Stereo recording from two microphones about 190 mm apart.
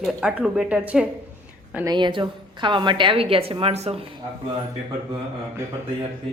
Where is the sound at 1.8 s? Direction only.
25° right (ahead or behind).